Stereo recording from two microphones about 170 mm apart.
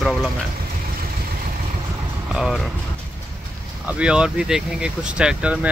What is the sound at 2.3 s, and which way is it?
Speech, centre (ahead or behind).